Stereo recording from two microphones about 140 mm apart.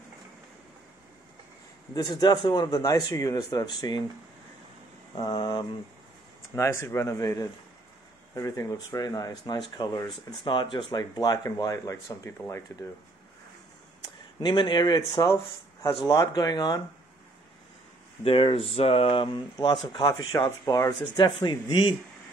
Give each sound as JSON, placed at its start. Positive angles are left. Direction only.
{"t": 2.0, "sound": "speech", "side_deg": 30}
{"t": 5.1, "sound": "speech", "side_deg": 35}
{"t": 6.5, "sound": "speech", "side_deg": 20}
{"t": 14.4, "sound": "speech", "side_deg": 35}
{"t": 18.2, "sound": "speech", "side_deg": 40}